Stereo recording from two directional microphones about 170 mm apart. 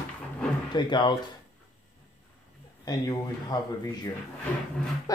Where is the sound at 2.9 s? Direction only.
20° left (ahead or behind).